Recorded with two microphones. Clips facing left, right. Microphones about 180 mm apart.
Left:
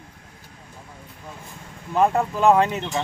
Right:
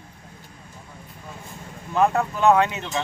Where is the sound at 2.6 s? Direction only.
35° left (ahead or behind).